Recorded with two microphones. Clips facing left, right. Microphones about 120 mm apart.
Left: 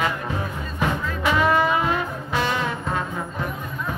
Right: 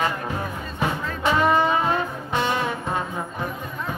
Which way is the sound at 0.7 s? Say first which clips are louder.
Left 2 dB; 30° right (ahead or behind).